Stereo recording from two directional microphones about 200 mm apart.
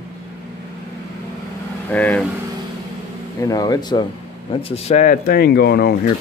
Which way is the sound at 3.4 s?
20° left (ahead or behind).